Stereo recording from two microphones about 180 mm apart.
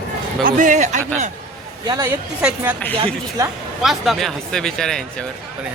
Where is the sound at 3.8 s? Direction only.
Centre (ahead or behind).